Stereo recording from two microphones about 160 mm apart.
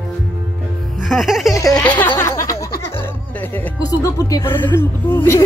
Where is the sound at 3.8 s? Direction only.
20° left (ahead or behind).